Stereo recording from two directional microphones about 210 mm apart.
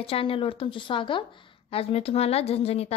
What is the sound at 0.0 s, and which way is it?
A woman's voice, 25° left (ahead or behind).